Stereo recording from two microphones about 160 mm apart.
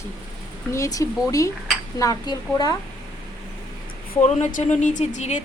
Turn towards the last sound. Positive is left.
turn(degrees=50)  # may be behind; listen again after turning